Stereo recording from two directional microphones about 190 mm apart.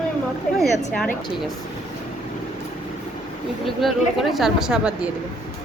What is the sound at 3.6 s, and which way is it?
Speech, centre (ahead or behind).